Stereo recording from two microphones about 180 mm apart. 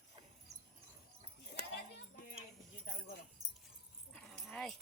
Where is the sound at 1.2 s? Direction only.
30° right (ahead or behind).